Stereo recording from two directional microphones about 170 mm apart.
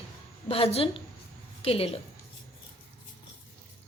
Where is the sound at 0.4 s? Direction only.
35° left (ahead or behind).